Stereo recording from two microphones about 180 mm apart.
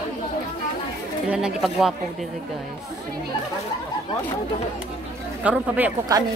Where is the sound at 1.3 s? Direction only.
Centre (ahead or behind).